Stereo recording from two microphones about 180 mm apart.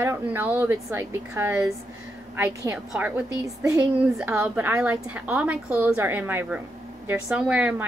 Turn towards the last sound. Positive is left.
turn(degrees=-5)  # may be behind; listen again after turning